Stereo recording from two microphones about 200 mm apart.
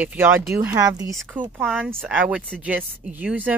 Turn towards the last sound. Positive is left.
turn(degrees=-10)  # may be behind; listen again after turning